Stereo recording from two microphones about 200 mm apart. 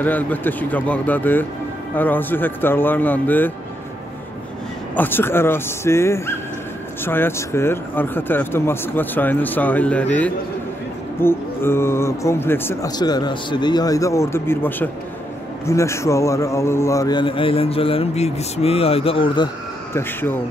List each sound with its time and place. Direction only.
0.0 s speech: 10° left (ahead or behind)
4.9 s a man's voice: 10° left (ahead or behind)
19.9 s speech: 10° left (ahead or behind)